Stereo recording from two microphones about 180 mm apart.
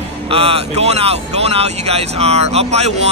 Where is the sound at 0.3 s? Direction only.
35° right (ahead or behind).